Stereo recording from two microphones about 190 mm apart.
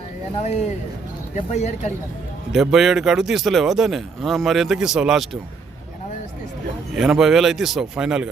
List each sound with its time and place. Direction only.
0.3 s speech: 35° left (ahead or behind)
2.5 s a man's voice: centre (ahead or behind)
6.9 s a man's voice: centre (ahead or behind)